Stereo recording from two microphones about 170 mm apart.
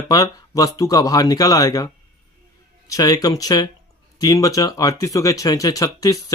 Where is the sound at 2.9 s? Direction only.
20° left (ahead or behind).